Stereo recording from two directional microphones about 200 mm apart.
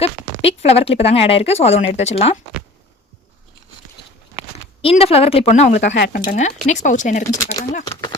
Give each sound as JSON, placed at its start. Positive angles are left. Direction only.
{"t": 0.0, "sound": "speech", "side_deg": 30}
{"t": 4.5, "sound": "speech", "side_deg": 30}
{"t": 5.8, "sound": "speech", "side_deg": 60}
{"t": 6.7, "sound": "speech", "side_deg": 35}